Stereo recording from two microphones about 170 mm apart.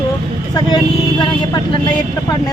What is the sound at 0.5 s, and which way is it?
Speech, 25° left (ahead or behind).